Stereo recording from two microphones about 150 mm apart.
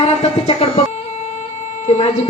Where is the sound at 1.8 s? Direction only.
50° left (ahead or behind).